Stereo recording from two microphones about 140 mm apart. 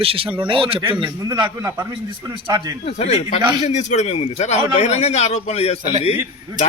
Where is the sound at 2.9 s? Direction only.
50° left (ahead or behind).